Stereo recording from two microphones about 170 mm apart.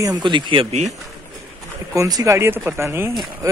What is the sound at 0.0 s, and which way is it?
Speech, 25° right (ahead or behind).